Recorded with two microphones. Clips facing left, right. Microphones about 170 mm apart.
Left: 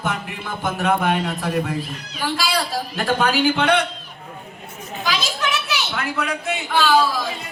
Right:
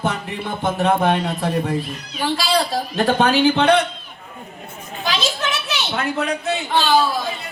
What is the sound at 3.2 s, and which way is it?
Speech, 20° right (ahead or behind).